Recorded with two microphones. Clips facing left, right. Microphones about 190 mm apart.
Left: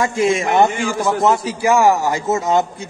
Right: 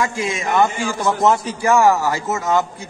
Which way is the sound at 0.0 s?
30° left (ahead or behind).